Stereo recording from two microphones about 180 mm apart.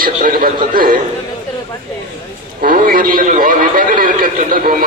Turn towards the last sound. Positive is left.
turn(degrees=-50)  # may be behind; listen again after turning